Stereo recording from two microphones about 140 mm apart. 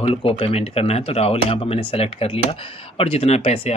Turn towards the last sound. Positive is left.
turn(degrees=45)  # may be behind; listen again after turning